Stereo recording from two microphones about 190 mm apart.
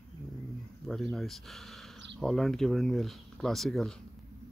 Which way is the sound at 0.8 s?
Centre (ahead or behind).